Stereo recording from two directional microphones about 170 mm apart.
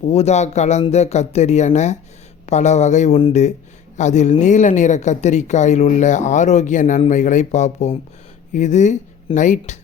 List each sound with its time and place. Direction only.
0.1 s speech: 40° left (ahead or behind)